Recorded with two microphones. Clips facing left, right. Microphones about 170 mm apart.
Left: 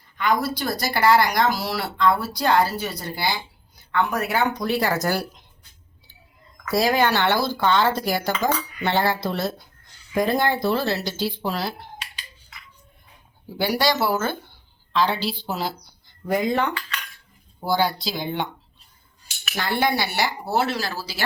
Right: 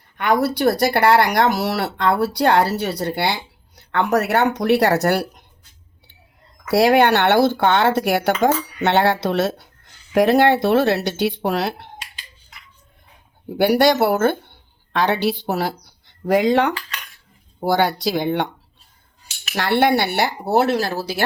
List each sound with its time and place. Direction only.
0.2 s speech: 65° right (ahead or behind)
6.7 s speech: 70° right (ahead or behind)
13.6 s a woman's voice: 60° right (ahead or behind); by 16.7 s 90° right
17.6 s speech: 65° right (ahead or behind)
19.5 s speech: 70° right (ahead or behind)